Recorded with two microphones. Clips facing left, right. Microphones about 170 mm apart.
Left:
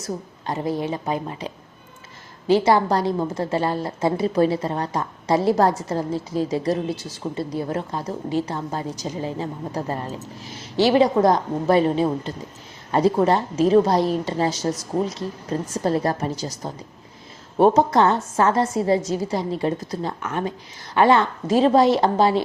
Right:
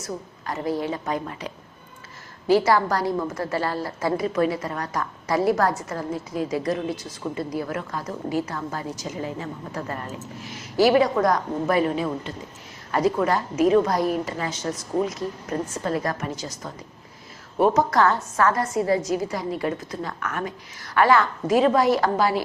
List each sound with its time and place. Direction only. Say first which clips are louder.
0.0 s a woman's voice: left 3 dB; 25° left (ahead or behind)